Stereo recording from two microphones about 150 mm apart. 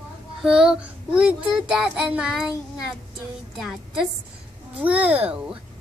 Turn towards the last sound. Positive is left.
turn(degrees=-10)  # may be behind; listen again after turning